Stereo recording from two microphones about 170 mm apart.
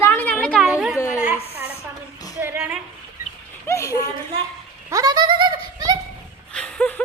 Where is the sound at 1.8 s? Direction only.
20° left (ahead or behind).